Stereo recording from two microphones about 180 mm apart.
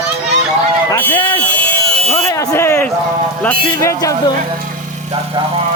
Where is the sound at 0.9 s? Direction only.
10° left (ahead or behind).